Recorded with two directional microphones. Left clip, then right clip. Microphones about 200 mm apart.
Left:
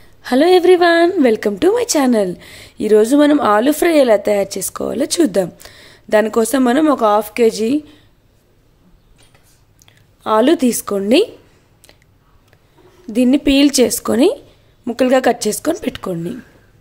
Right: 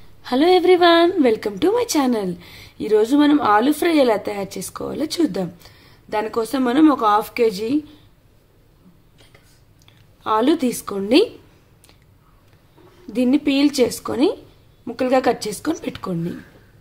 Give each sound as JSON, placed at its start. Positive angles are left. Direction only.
{"t": 0.2, "sound": "a woman's voice", "side_deg": 25}
{"t": 9.8, "sound": "speech", "side_deg": 25}
{"t": 13.0, "sound": "a woman's voice", "side_deg": 25}